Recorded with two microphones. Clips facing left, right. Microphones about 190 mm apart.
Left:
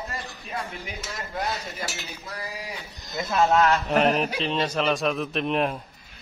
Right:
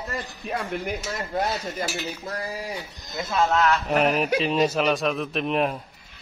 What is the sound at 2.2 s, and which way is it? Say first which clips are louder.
Cutlery: right 5 dB; 45° right (ahead or behind).